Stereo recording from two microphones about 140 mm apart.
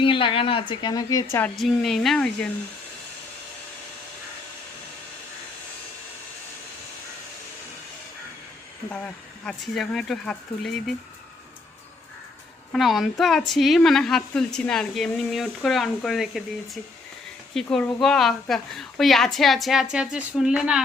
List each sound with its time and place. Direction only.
0.0 s speech: 40° left (ahead or behind)
1.5 s a woman's voice: centre (ahead or behind)
9.5 s a woman's voice: 5° left (ahead or behind)
12.7 s a woman's voice: centre (ahead or behind)